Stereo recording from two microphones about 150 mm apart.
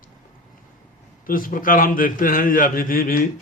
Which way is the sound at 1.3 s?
65° left (ahead or behind).